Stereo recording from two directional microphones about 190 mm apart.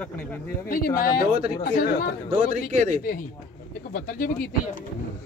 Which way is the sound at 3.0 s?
50° left (ahead or behind).